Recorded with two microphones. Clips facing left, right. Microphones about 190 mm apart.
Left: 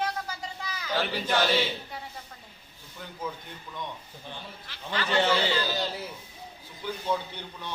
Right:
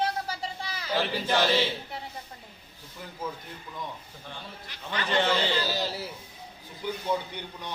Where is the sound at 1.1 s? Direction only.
10° right (ahead or behind).